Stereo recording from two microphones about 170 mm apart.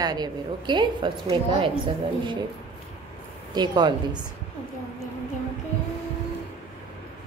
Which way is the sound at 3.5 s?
25° right (ahead or behind).